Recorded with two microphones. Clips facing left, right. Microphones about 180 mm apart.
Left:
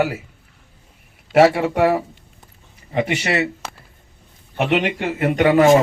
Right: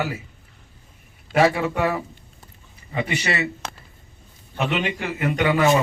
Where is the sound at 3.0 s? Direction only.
75° left (ahead or behind).